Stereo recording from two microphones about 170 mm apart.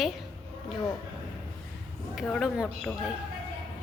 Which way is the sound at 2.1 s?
Centre (ahead or behind).